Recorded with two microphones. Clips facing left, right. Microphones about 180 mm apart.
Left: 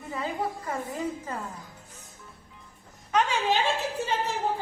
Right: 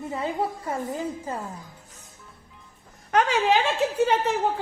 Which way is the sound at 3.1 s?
75° right (ahead or behind).